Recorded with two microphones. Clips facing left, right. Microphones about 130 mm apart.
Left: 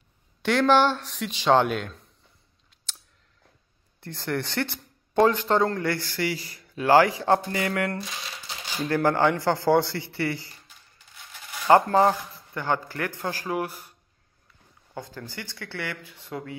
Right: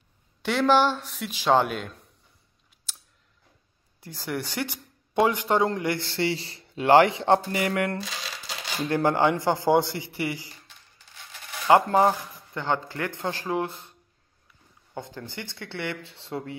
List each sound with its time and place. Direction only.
0.4 s a man's voice: 5° right (ahead or behind)
4.0 s speech: 5° right (ahead or behind); by 8.0 s 25° right (ahead or behind)
8.0 s a sound: 90° right
8.8 s speech: 20° right (ahead or behind)
11.7 s speech: 15° right (ahead or behind)
15.0 s speech: 20° right (ahead or behind)